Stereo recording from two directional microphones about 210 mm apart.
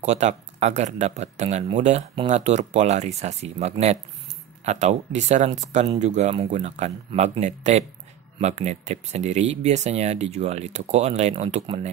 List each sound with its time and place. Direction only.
0.0 s speech: 35° right (ahead or behind)